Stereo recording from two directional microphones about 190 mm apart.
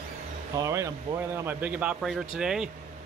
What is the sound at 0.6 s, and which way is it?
Speech, 15° right (ahead or behind).